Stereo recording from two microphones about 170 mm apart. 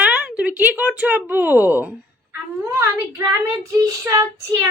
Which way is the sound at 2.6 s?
15° right (ahead or behind).